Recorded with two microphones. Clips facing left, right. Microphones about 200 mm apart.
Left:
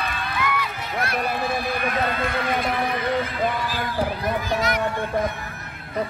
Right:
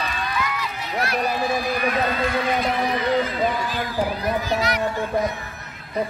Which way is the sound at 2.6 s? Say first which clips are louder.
Right 2 dB; 50° left (ahead or behind).